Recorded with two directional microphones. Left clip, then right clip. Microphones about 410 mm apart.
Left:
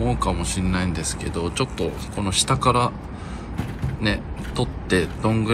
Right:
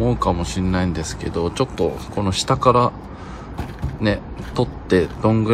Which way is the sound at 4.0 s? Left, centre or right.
Centre.